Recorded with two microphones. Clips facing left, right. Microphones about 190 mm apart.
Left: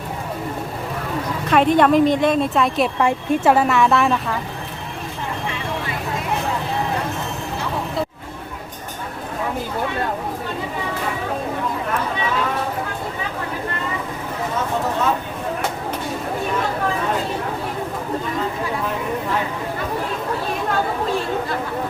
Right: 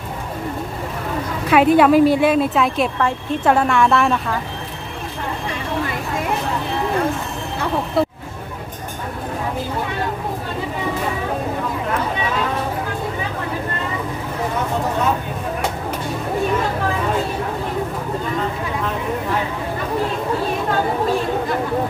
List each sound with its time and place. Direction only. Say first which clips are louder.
1.5 s a woman's voice: right 2 dB; 5° right (ahead or behind)
3.0 s a woman's voice: left 2 dB; 15° left (ahead or behind)
3.5 s speech: right 2 dB; 5° left (ahead or behind)
8.0 s vehicle: right 7 dB; 60° right (ahead or behind)